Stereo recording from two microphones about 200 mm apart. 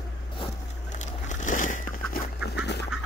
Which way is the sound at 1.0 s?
35° left (ahead or behind).